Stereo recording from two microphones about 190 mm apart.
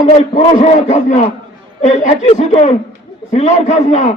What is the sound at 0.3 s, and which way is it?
Speech, 35° left (ahead or behind).